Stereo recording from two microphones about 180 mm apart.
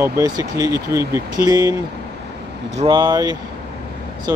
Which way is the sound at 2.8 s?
25° right (ahead or behind).